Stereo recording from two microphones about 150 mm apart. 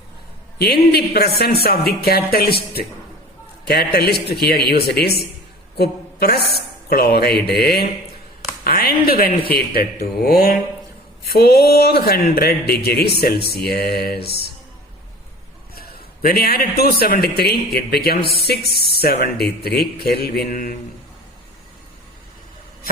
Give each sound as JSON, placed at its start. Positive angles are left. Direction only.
{"t": 0.6, "sound": "a woman's voice", "side_deg": 90}
{"t": 9.6, "sound": "speech", "side_deg": 90}
{"t": 15.7, "sound": "a man's voice", "side_deg": 90}
{"t": 20.2, "sound": "mantra", "side_deg": 85}